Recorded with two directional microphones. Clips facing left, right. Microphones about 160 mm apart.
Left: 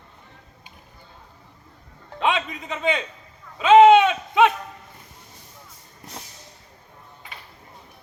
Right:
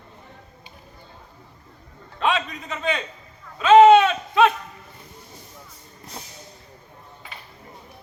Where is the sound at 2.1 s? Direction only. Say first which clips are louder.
Even; 20° left (ahead or behind).